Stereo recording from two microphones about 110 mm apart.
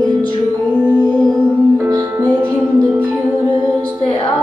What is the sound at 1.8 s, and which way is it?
Music, 35° right (ahead or behind).